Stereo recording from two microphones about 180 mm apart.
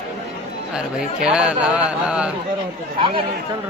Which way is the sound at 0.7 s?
5° right (ahead or behind).